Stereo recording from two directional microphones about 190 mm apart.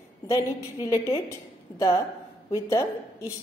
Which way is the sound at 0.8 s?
15° left (ahead or behind).